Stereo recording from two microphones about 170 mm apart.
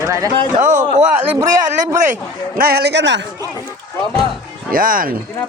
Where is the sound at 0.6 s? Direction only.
50° right (ahead or behind).